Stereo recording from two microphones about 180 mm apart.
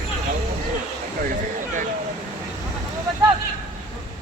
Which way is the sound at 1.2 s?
50° right (ahead or behind).